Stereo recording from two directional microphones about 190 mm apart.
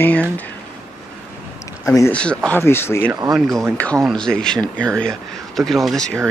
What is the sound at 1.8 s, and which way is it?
Speech, 15° left (ahead or behind).